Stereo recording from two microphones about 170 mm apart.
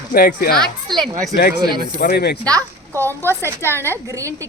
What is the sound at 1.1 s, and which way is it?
Speech, 20° right (ahead or behind).